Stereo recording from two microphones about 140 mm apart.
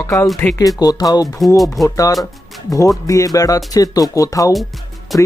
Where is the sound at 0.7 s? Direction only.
25° left (ahead or behind).